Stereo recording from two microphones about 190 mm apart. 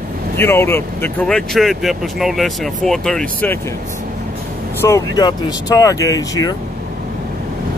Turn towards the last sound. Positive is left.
turn(degrees=20)  # may be behind; listen again after turning